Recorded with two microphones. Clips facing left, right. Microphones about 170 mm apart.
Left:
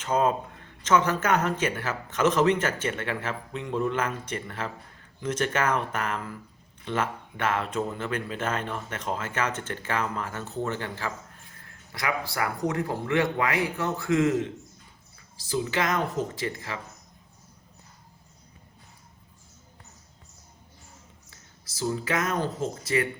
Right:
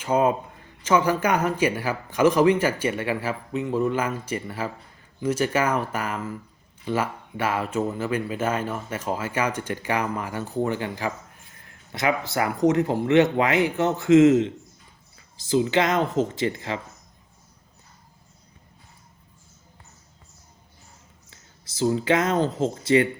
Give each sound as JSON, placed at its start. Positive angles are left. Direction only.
{"t": 0.0, "sound": "speech", "side_deg": -10}
{"t": 21.2, "sound": "speech", "side_deg": -25}